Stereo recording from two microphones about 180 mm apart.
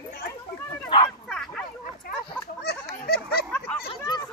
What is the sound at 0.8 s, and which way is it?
Bow-wow, 25° left (ahead or behind).